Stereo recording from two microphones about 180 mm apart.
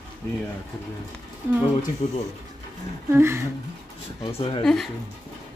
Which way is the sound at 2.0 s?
35° left (ahead or behind).